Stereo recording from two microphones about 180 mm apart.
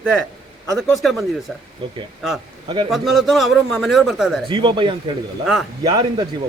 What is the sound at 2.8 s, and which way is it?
A man's voice, centre (ahead or behind).